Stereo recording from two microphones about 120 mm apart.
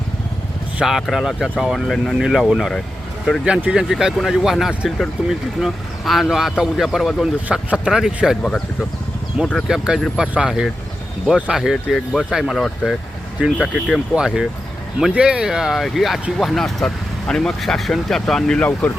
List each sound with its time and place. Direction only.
0.8 s speech: 5° right (ahead or behind)
9.6 s speech: 5° right (ahead or behind); by 18.9 s 10° left (ahead or behind)